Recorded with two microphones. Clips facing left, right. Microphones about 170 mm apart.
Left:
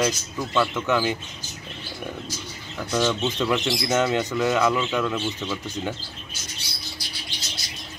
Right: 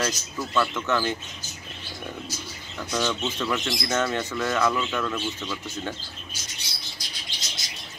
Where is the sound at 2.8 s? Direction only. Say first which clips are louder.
Left 4 dB; 10° left (ahead or behind).